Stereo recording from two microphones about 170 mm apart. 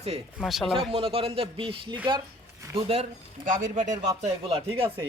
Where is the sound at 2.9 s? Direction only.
45° right (ahead or behind).